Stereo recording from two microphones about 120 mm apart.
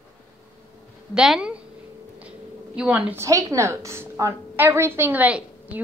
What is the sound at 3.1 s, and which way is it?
A woman's voice, 25° right (ahead or behind).